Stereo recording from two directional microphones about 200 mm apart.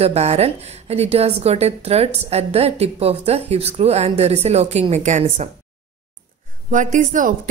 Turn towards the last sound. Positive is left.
turn(degrees=-40)  # may be behind; listen again after turning